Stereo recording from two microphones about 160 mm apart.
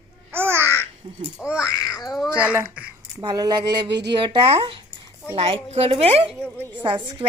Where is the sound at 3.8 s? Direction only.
90° right.